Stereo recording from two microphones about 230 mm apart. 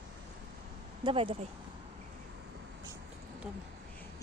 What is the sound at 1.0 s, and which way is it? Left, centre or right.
Speech, right.